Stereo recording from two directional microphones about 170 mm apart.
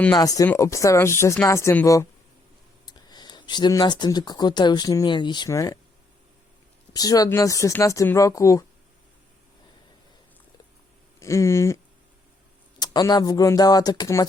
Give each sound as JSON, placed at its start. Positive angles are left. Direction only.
{"t": 0.1, "sound": "speech", "side_deg": 20}
{"t": 6.9, "sound": "speech", "side_deg": 20}
{"t": 11.2, "sound": "speech", "side_deg": 15}
{"t": 12.8, "sound": "speech", "side_deg": 25}